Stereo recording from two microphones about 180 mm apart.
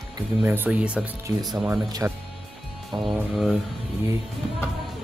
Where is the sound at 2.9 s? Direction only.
Centre (ahead or behind).